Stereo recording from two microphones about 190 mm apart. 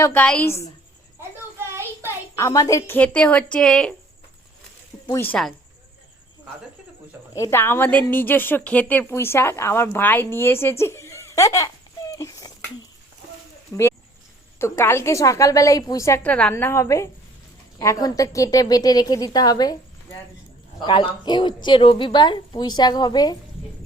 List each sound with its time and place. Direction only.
0.0 s a woman's voice: 10° left (ahead or behind)
1.5 s child singing: 15° right (ahead or behind)
2.3 s a woman's voice: 15° left (ahead or behind)
5.0 s a woman's voice: 10° left (ahead or behind)
7.3 s a woman's voice: 15° left (ahead or behind)
12.1 s a sound: 20° left (ahead or behind)
13.7 s a woman's voice: 15° left (ahead or behind)